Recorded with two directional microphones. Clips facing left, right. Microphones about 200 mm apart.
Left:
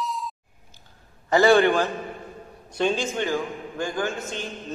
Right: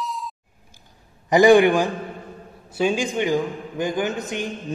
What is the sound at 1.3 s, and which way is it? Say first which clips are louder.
A man's voice: right 4 dB; 15° right (ahead or behind).